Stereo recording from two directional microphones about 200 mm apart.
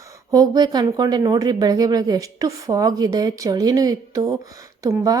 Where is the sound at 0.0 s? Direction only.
15° right (ahead or behind).